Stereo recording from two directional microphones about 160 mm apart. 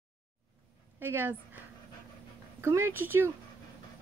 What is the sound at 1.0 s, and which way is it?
Speech, 15° right (ahead or behind).